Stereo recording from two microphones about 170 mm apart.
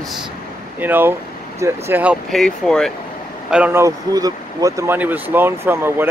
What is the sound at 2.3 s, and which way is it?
Speech, 5° left (ahead or behind).